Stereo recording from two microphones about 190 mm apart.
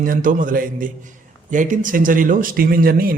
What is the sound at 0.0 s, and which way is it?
Speech, 45° right (ahead or behind).